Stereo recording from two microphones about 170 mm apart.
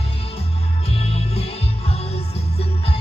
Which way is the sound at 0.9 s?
35° left (ahead or behind).